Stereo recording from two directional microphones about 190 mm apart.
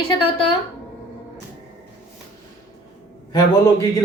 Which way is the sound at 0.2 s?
30° left (ahead or behind).